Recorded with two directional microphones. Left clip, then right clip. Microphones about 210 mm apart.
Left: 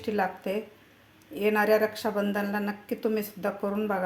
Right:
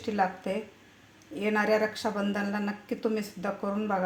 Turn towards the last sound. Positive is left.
turn(degrees=15)  # may be behind; listen again after turning